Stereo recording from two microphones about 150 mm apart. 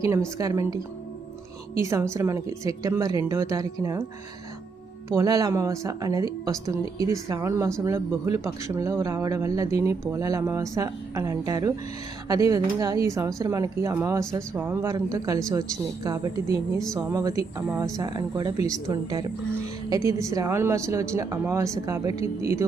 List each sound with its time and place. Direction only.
0.3 s speech: 20° right (ahead or behind)
1.8 s speech: 20° right (ahead or behind)
5.0 s speech: 20° right (ahead or behind)